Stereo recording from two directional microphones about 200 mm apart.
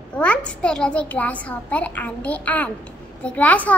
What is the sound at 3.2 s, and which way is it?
Speech, 5° left (ahead or behind).